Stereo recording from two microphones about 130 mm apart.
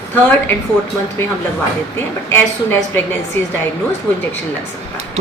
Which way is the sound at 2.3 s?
15° left (ahead or behind).